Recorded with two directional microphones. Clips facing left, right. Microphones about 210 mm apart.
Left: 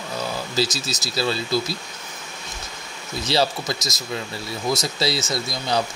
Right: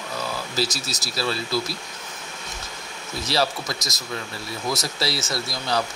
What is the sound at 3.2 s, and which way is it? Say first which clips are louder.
Speech: left 2 dB; 25° left (ahead or behind).